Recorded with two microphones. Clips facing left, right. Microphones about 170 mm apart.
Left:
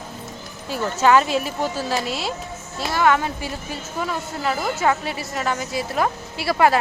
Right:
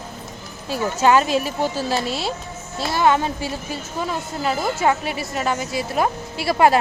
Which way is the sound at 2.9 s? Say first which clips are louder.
Right 1 dB; 30° right (ahead or behind).